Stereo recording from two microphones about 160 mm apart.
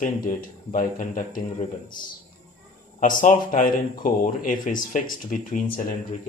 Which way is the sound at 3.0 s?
55° left (ahead or behind).